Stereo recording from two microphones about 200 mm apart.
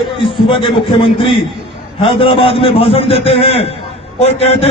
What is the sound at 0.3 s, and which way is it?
A man's voice, 25° left (ahead or behind).